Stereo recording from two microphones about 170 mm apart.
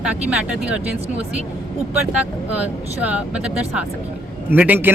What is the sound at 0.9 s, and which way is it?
Speech, 35° right (ahead or behind).